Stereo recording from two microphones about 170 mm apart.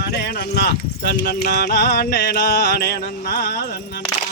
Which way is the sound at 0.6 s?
75° left (ahead or behind).